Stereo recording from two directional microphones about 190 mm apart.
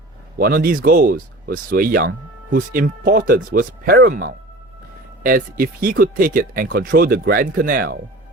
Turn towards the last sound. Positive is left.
turn(degrees=-50)  # may be behind; listen again after turning